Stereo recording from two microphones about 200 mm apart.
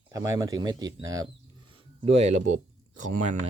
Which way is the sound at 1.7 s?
30° right (ahead or behind).